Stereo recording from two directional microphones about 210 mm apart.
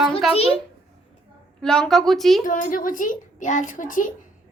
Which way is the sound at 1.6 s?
5° left (ahead or behind).